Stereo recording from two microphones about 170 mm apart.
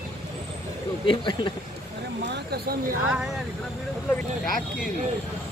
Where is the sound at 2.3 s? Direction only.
65° right (ahead or behind).